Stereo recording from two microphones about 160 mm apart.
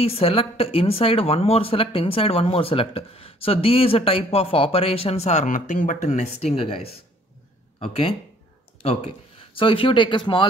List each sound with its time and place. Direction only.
0.0 s speech: 35° left (ahead or behind)